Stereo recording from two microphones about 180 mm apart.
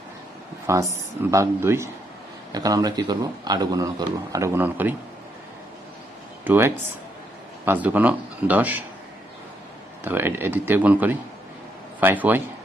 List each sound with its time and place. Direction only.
0.7 s a man's voice: 15° right (ahead or behind)
6.4 s speech: 10° right (ahead or behind)
10.0 s speech: 10° right (ahead or behind)